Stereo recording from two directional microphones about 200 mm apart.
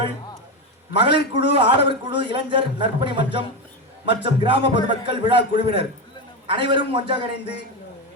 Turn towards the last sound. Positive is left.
turn(degrees=-25)  # may be behind; listen again after turning